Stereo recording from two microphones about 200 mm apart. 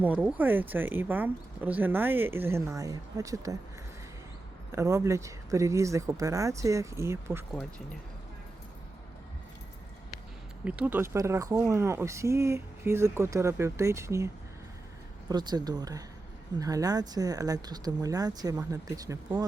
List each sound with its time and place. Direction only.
0.0 s speech: 10° right (ahead or behind)
4.7 s speech: 15° right (ahead or behind)
10.6 s speech: 5° right (ahead or behind)
15.3 s speech: 20° right (ahead or behind)